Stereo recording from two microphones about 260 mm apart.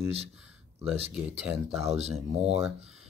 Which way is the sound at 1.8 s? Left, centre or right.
Right.